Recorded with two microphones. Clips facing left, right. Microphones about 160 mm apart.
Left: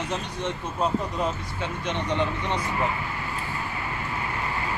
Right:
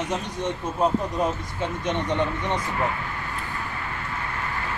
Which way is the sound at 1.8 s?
20° right (ahead or behind).